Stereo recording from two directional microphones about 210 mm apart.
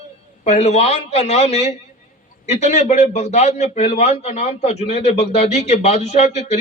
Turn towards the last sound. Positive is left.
turn(degrees=30)  # may be behind; listen again after turning